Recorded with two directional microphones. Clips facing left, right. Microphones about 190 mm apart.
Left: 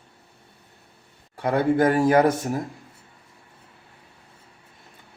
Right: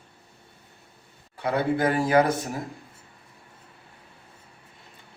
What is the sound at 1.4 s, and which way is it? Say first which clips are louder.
Speech: left 4 dB; 50° left (ahead or behind).